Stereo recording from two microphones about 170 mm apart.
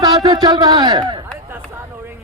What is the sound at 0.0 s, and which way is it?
A man's voice, 25° right (ahead or behind).